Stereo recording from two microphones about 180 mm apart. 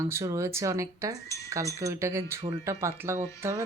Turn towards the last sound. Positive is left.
turn(degrees=-15)  # may be behind; listen again after turning